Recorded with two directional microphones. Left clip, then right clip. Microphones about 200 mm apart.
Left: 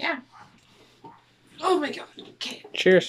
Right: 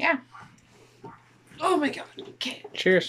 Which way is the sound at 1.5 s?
Centre (ahead or behind).